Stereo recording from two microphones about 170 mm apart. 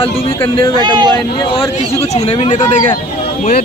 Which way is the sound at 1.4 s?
30° left (ahead or behind).